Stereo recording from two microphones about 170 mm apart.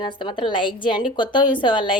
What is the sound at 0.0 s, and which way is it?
Speech, 30° left (ahead or behind).